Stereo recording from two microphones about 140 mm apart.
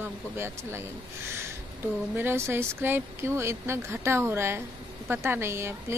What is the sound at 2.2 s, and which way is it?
A woman's voice, 15° right (ahead or behind).